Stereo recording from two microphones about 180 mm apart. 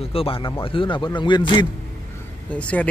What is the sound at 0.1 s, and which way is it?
Speech, 30° left (ahead or behind).